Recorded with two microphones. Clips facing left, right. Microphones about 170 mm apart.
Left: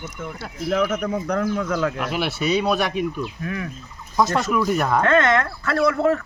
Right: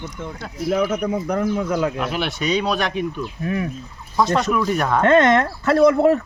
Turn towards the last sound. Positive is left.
turn(degrees=-20)  # may be behind; listen again after turning